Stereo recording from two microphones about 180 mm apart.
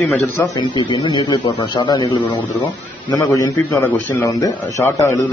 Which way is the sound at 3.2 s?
20° left (ahead or behind).